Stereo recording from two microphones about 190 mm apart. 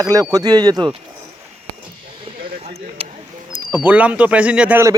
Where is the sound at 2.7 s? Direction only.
30° right (ahead or behind).